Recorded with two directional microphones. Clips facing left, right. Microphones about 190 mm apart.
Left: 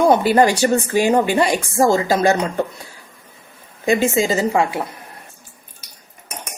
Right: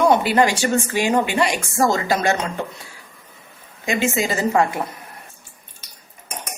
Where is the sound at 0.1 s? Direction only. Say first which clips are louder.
Left 3 dB; 40° left (ahead or behind).